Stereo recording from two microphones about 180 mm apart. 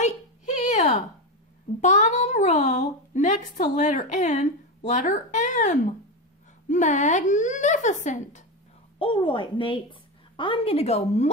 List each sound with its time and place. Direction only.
0.7 s a sound: 40° left (ahead or behind)
1.8 s a child's voice: 40° left (ahead or behind)
8.9 s a woman's voice: 30° left (ahead or behind)